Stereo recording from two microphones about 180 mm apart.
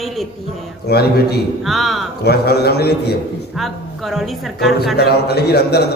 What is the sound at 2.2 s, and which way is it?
Speech, 65° left (ahead or behind).